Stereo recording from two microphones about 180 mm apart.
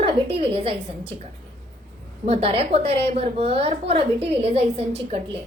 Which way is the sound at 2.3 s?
35° right (ahead or behind).